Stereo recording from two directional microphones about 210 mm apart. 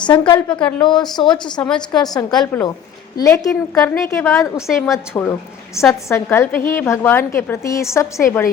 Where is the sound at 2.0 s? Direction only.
20° left (ahead or behind).